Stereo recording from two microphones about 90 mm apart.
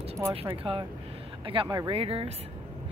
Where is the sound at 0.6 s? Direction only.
90° right.